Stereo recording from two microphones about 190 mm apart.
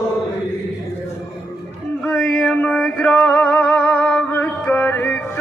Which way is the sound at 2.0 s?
5° left (ahead or behind).